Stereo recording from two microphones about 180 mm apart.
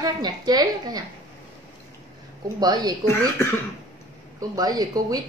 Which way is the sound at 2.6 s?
20° right (ahead or behind).